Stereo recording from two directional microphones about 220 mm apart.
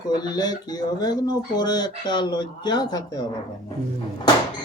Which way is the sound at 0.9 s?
20° left (ahead or behind).